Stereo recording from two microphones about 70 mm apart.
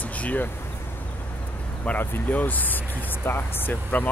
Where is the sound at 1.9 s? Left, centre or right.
Left.